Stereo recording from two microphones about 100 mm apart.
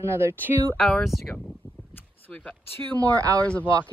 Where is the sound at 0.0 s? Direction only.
25° right (ahead or behind).